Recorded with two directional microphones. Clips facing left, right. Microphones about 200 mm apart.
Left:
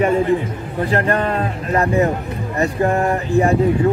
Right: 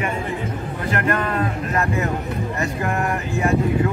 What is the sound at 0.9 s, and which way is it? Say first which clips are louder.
Speech: left 3 dB; 35° left (ahead or behind).